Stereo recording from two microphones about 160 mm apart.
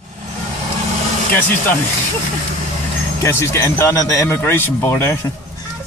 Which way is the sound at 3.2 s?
15° left (ahead or behind).